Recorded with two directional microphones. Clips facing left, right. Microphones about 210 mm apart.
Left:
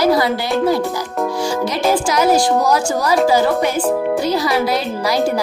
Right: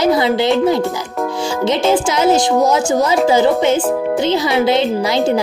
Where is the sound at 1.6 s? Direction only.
25° right (ahead or behind).